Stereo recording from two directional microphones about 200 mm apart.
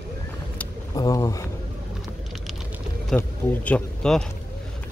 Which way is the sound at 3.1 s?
10° left (ahead or behind).